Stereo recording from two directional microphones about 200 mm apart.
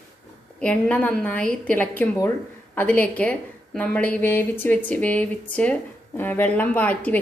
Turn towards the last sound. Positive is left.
turn(degrees=10)  # may be behind; listen again after turning